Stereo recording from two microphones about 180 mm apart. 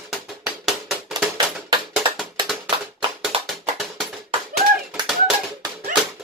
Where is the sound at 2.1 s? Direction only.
Centre (ahead or behind).